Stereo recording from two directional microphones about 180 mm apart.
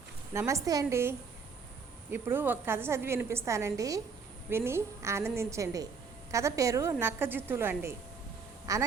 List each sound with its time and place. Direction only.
0.3 s a woman's voice: 15° right (ahead or behind)